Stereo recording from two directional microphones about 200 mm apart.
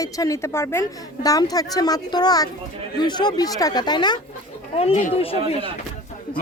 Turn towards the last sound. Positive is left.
turn(degrees=30)  # may be behind; listen again after turning